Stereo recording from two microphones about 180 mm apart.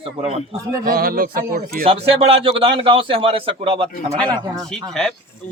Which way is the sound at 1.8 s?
30° right (ahead or behind).